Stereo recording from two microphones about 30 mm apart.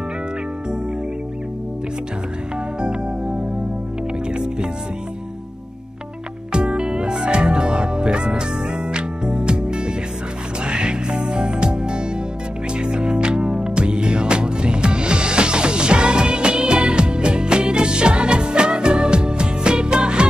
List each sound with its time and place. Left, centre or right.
2.8 s music: right
6.5 s music: right